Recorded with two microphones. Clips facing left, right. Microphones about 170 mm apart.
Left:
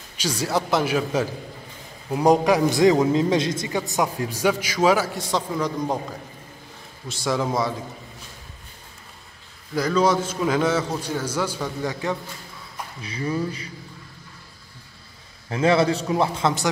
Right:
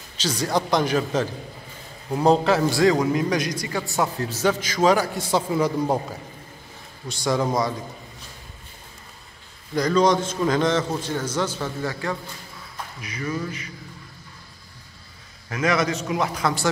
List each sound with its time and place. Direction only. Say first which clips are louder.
0.2 s a man's voice: even; 10° left (ahead or behind); by 5.9 s 10° right (ahead or behind)
7.1 s a man's voice: right 1 dB; centre (ahead or behind)
9.8 s a man's voice: right 1 dB; 5° left (ahead or behind)
13.0 s a sound: left 3 dB; 30° left (ahead or behind)
15.5 s a man's voice: left 4 dB; 30° left (ahead or behind)